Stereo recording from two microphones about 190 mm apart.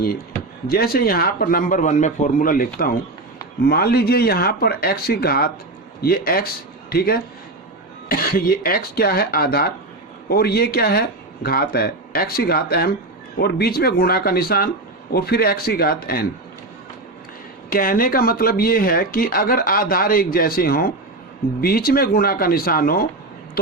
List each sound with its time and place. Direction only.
0.7 s speech: 55° left (ahead or behind)
17.7 s speech: 50° left (ahead or behind)